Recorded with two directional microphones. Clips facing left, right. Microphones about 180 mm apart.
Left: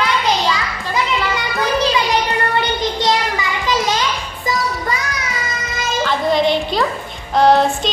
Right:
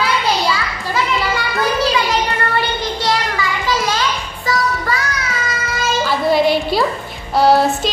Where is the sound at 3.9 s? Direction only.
20° left (ahead or behind).